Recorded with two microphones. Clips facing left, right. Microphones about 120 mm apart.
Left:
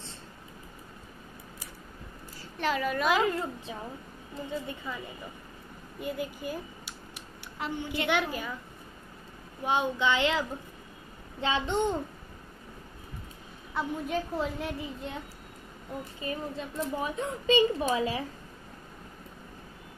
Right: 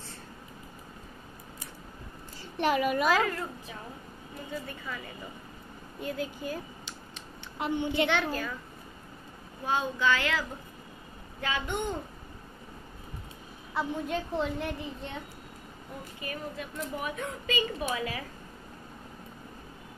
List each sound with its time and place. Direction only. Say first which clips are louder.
2.5 s a woman's voice: right 3 dB; 15° right (ahead or behind)
3.1 s a woman's voice: left 1 dB; 20° left (ahead or behind)
7.5 s a woman's voice: right 5 dB; 20° right (ahead or behind)
8.1 s a woman's voice: even; 15° left (ahead or behind)
9.7 s a woman's voice: left 1 dB; 20° left (ahead or behind)
11.4 s a woman's voice: left 4 dB; 25° left (ahead or behind)
13.7 s a woman's voice: even; centre (ahead or behind)
16.2 s a woman's voice: left 2 dB; 30° left (ahead or behind)